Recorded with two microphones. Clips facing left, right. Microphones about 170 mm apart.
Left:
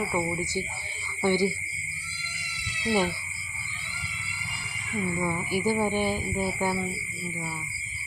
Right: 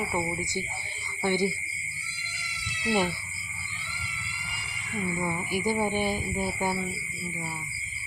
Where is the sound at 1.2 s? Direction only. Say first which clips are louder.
Left 2 dB; 20° right (ahead or behind).